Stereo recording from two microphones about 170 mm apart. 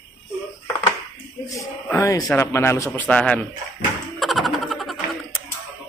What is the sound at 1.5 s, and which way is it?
A man's voice, 20° left (ahead or behind).